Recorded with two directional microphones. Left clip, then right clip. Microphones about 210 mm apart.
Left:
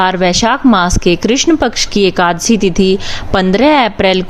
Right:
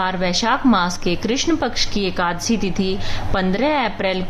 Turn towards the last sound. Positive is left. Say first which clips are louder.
# left 10 dB
turn(degrees=40)  # may be behind; listen again after turning